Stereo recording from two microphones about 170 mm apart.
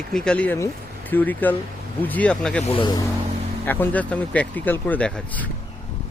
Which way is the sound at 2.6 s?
30° left (ahead or behind).